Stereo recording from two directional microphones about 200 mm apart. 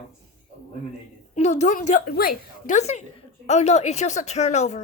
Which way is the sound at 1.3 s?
35° left (ahead or behind).